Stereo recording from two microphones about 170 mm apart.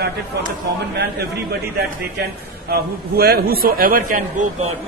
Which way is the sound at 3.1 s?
65° right (ahead or behind).